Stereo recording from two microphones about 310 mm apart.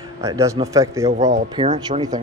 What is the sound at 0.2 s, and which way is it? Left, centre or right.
Speech, centre.